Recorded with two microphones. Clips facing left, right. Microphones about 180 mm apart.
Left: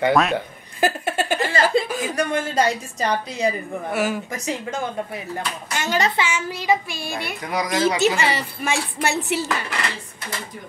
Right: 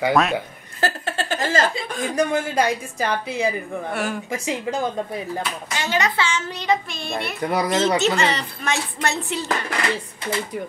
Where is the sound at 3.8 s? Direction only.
5° left (ahead or behind).